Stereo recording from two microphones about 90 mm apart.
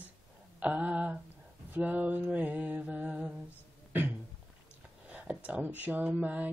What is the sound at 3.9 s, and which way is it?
Beatboxing, 20° right (ahead or behind).